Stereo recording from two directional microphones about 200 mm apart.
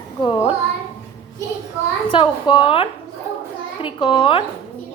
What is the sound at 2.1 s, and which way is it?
A woman's voice, 25° left (ahead or behind).